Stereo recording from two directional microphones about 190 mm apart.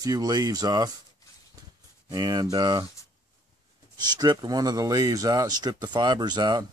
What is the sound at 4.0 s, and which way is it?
Speech, 20° right (ahead or behind).